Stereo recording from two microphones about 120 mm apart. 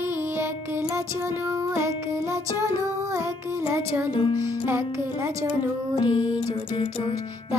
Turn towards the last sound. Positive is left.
turn(degrees=40)  # may be behind; listen again after turning